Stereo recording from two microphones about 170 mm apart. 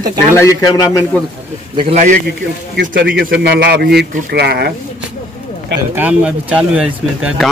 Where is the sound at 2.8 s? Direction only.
70° right (ahead or behind).